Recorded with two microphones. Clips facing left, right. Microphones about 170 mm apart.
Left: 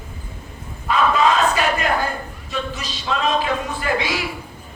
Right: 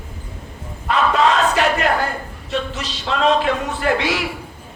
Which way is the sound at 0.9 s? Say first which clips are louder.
Right 1 dB; 70° right (ahead or behind).